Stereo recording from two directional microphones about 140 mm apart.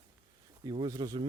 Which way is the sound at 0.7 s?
35° right (ahead or behind).